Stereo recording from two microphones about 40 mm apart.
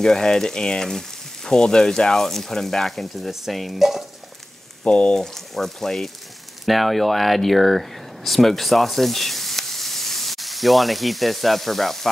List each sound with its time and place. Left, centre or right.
0.0 s frying: centre
3.3 s stir: centre
4.8 s speech: left
5.2 s frying: centre
6.6 s speech: centre